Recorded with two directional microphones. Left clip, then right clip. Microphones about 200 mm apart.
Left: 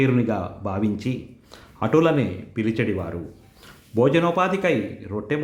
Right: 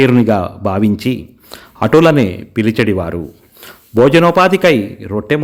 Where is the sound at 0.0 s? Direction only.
45° right (ahead or behind).